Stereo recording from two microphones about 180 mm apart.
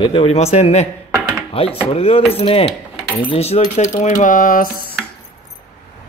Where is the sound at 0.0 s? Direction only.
30° left (ahead or behind).